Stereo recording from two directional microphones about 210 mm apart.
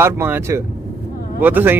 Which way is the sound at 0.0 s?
10° right (ahead or behind).